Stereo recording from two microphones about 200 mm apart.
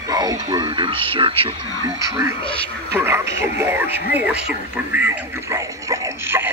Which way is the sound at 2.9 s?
10° right (ahead or behind).